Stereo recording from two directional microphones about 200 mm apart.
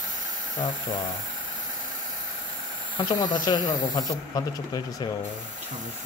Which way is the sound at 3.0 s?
20° left (ahead or behind).